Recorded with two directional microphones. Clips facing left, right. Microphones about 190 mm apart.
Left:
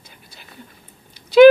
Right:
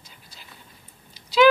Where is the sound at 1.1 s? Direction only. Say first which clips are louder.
Left 10 dB; 55° left (ahead or behind).